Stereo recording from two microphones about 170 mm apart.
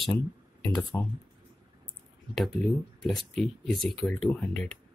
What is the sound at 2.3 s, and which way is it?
Speech, centre (ahead or behind).